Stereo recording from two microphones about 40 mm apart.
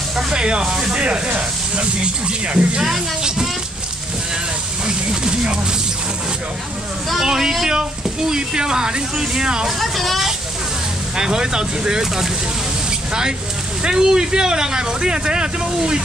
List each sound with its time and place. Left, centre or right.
0.3 s speech: right
1.8 s speech: right
2.8 s speech: centre
4.8 s speech: right
7.2 s speech: centre
9.8 s speech: centre
11.1 s speech: centre
13.8 s speech: centre